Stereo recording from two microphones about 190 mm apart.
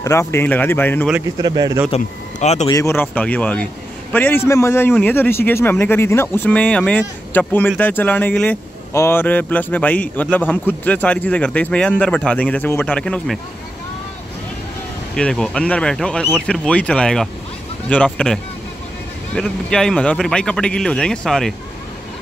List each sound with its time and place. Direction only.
0.0 s a man's voice: 15° left (ahead or behind)
1.4 s speech: 20° right (ahead or behind)
1.9 s speech: 35° left (ahead or behind)
2.7 s a man's voice: 15° left (ahead or behind)
15.1 s speech: 5° left (ahead or behind)